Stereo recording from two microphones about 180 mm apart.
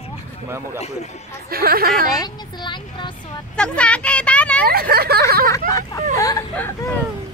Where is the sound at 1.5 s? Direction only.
55° right (ahead or behind).